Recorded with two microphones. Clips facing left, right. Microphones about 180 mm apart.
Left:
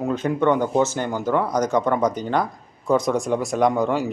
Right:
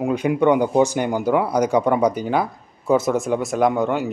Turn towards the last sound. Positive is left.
turn(degrees=0)  # may be behind; listen again after turning